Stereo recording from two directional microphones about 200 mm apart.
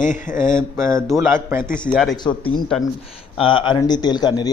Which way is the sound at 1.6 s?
45° left (ahead or behind).